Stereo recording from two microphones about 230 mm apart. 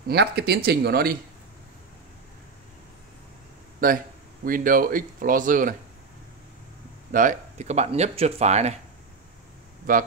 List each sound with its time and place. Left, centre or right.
0.1 s speech: right
3.8 s speech: right
7.1 s speech: right
9.9 s speech: right